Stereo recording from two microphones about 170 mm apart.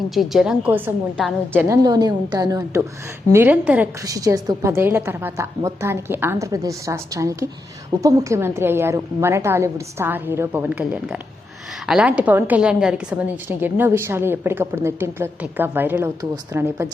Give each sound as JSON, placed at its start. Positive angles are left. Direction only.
{"t": 0.1, "sound": "a woman's voice", "side_deg": 0}
{"t": 1.5, "sound": "a woman's voice", "side_deg": -15}
{"t": 4.0, "sound": "a woman's voice", "side_deg": -20}